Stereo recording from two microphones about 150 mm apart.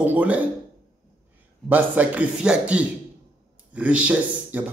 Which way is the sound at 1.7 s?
10° right (ahead or behind).